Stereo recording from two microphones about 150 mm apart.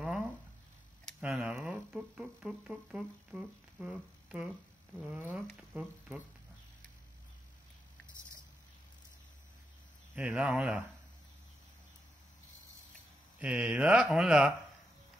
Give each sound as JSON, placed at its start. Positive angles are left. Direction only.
{"t": 0.0, "sound": "a sound", "side_deg": -10}
{"t": 1.5, "sound": "speech", "side_deg": -10}
{"t": 5.0, "sound": "speech", "side_deg": -5}
{"t": 10.1, "sound": "speech", "side_deg": -10}
{"t": 13.4, "sound": "speech", "side_deg": -10}